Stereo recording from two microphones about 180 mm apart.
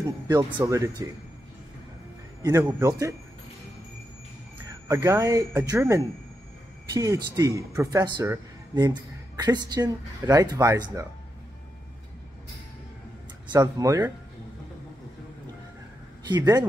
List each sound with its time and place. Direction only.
0.3 s speech: 25° right (ahead or behind)
2.6 s speech: 20° right (ahead or behind)
4.8 s speech: 15° right (ahead or behind)
13.5 s speech: 20° right (ahead or behind)
16.3 s speech: 20° right (ahead or behind)